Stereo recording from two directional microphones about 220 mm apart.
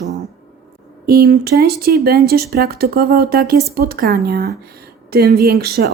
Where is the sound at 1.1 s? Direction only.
45° right (ahead or behind).